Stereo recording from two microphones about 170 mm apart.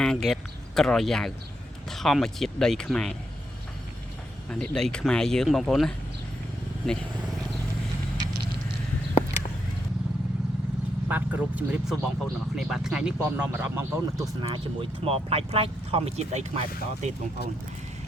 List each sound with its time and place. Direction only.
0.0 s speech: centre (ahead or behind)
4.4 s speech: 5° left (ahead or behind)
11.1 s speech: 10° right (ahead or behind); by 17.2 s 40° right (ahead or behind)